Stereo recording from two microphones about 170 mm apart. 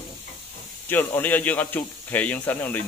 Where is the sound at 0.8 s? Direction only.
10° left (ahead or behind).